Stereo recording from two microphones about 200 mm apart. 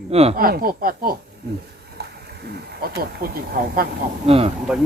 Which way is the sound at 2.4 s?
50° right (ahead or behind).